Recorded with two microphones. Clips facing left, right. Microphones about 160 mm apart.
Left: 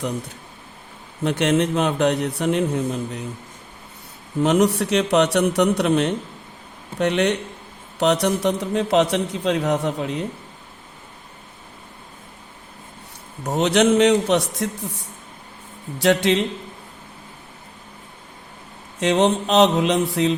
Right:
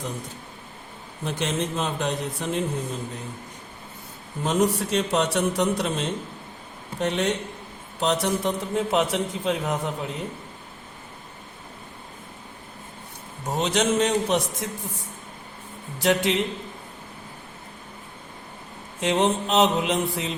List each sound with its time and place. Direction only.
1.2 s a man's voice: 70° left (ahead or behind)
4.4 s a man's voice: 75° left (ahead or behind)
13.5 s a man's voice: 65° left (ahead or behind)
18.9 s a man's voice: 80° left